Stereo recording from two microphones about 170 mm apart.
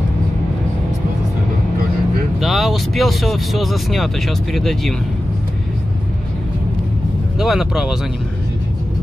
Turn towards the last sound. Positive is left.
turn(degrees=-5)  # may be behind; listen again after turning